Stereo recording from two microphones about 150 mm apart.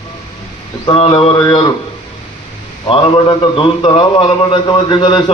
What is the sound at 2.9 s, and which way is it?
A man's voice, 35° left (ahead or behind).